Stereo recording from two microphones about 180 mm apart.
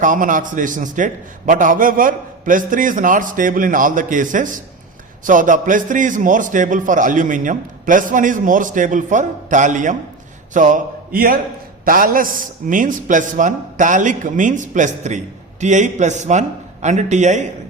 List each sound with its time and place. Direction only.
0.0 s a man's voice: 45° right (ahead or behind)